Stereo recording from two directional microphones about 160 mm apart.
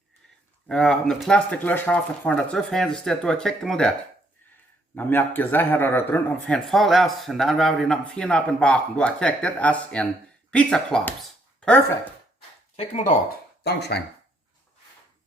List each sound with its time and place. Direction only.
0.7 s speech: 5° left (ahead or behind)
4.9 s a man's voice: 10° left (ahead or behind)
12.7 s speech: 40° left (ahead or behind)
13.7 s speech: 90° left